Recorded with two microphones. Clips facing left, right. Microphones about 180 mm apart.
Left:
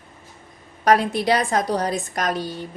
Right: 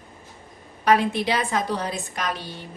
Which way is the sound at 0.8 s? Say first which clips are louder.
Left 2 dB; 40° left (ahead or behind).